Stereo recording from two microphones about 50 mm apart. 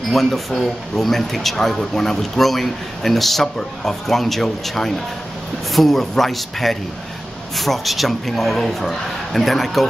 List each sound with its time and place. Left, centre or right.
0.1 s speech: centre